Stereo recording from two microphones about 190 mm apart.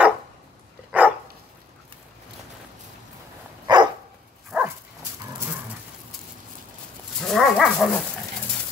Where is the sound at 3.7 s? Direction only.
20° right (ahead or behind).